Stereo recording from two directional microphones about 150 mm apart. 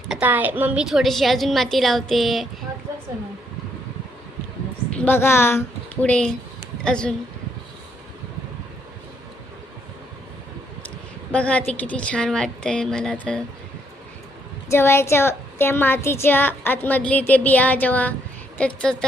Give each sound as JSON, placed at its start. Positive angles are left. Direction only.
{"t": 0.1, "sound": "a woman's voice", "side_deg": -10}
{"t": 4.9, "sound": "a woman's voice", "side_deg": 15}
{"t": 10.8, "sound": "a woman's voice", "side_deg": 10}
{"t": 14.7, "sound": "a woman's voice", "side_deg": 15}